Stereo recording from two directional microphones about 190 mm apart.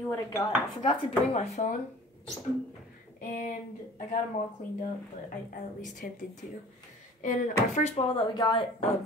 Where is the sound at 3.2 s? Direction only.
45° left (ahead or behind).